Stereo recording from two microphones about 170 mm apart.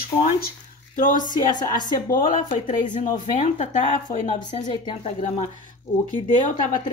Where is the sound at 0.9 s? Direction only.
50° left (ahead or behind).